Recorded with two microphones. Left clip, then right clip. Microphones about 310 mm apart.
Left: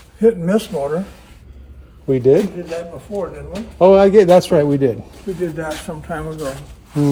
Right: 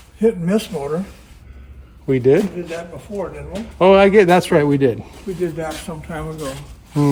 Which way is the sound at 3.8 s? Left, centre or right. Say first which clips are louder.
Left 1 dB; centre.